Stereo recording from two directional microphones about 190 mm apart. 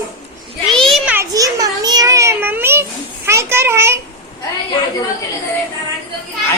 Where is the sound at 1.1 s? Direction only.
15° right (ahead or behind).